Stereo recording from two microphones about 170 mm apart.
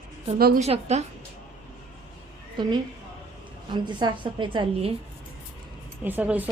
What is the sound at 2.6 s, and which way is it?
A woman's voice, 25° right (ahead or behind).